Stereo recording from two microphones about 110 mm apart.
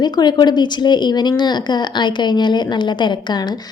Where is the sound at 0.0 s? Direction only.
40° left (ahead or behind).